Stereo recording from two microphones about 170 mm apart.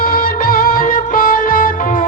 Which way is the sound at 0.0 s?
60° left (ahead or behind).